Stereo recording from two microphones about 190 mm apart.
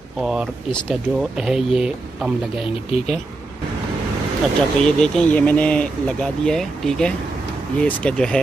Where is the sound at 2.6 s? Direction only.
35° left (ahead or behind).